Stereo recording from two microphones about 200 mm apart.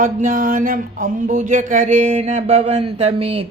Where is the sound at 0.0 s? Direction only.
40° right (ahead or behind).